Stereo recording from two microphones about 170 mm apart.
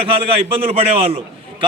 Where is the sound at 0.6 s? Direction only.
35° right (ahead or behind).